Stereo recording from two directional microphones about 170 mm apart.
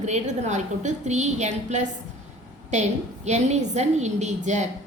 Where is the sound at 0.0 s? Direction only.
40° right (ahead or behind).